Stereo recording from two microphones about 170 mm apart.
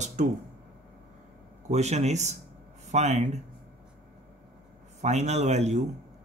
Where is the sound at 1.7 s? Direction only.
40° right (ahead or behind).